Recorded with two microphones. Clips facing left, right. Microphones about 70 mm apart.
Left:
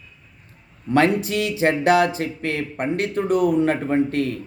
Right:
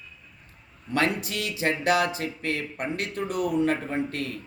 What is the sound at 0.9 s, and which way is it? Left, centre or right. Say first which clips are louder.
Speech: left 8 dB; left.